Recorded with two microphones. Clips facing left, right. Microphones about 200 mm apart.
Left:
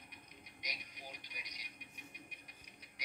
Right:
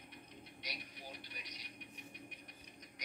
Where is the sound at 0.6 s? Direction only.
15° left (ahead or behind).